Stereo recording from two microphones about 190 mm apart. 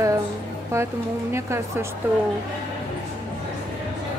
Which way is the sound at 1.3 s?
15° right (ahead or behind).